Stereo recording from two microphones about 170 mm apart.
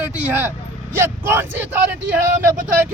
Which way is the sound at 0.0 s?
10° right (ahead or behind).